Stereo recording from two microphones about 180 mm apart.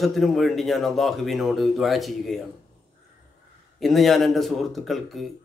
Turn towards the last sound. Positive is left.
turn(degrees=0)  # may be behind; listen again after turning